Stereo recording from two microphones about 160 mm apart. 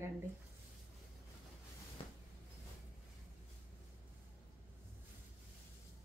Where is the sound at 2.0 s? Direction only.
35° left (ahead or behind).